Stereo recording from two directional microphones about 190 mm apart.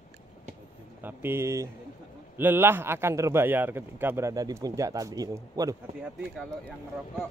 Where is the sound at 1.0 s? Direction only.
10° right (ahead or behind).